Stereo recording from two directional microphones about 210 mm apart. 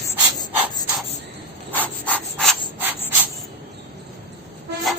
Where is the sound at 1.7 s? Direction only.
5° left (ahead or behind).